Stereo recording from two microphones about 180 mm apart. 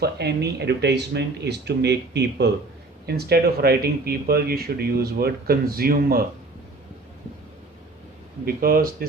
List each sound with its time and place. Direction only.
0.0 s speech: 70° right (ahead or behind)
8.4 s speech: 55° right (ahead or behind)